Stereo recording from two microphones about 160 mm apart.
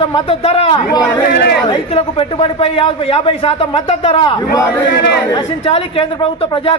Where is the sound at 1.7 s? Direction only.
35° left (ahead or behind).